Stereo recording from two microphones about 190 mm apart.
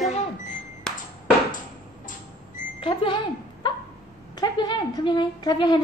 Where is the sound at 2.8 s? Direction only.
30° left (ahead or behind).